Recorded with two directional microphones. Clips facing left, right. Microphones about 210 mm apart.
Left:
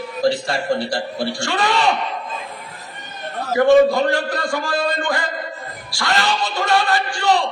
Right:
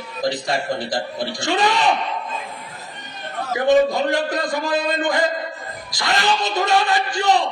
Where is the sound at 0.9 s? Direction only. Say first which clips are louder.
Left 2 dB; 20° right (ahead or behind).